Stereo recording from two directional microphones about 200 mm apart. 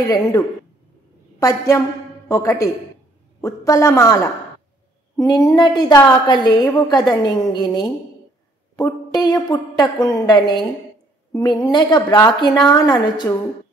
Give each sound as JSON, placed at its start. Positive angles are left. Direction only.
{"t": 0.1, "sound": "a woman's voice", "side_deg": 20}